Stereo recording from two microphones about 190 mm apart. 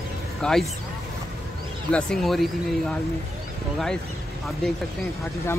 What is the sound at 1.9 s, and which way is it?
Speech, centre (ahead or behind).